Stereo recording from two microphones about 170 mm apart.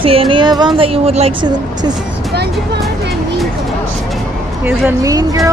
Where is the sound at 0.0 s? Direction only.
30° right (ahead or behind).